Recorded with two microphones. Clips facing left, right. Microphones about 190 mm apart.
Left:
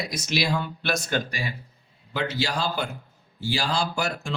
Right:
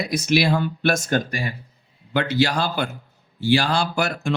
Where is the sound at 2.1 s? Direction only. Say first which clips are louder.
Right 7 dB; 65° right (ahead or behind).